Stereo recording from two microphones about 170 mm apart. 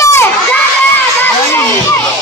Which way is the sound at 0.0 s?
15° left (ahead or behind).